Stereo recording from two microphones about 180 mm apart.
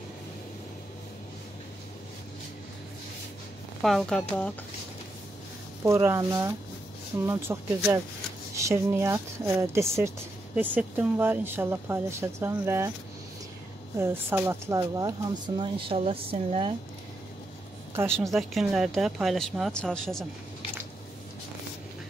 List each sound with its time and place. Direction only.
3.8 s speech: centre (ahead or behind)
5.9 s speech: 15° right (ahead or behind)
13.9 s speech: 15° right (ahead or behind); by 16.7 s 30° right (ahead or behind)
18.1 s speech: centre (ahead or behind)